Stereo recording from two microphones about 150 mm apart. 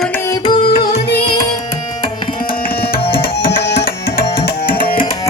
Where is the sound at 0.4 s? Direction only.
35° left (ahead or behind).